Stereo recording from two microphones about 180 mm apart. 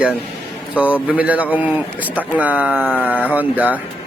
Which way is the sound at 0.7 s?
10° right (ahead or behind).